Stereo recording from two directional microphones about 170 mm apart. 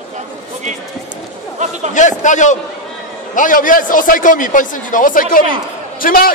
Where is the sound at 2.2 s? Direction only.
45° left (ahead or behind).